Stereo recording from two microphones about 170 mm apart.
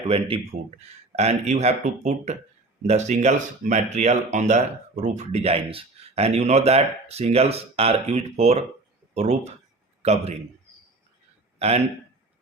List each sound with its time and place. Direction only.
0.1 s speech: 35° right (ahead or behind)
11.6 s speech: 35° right (ahead or behind)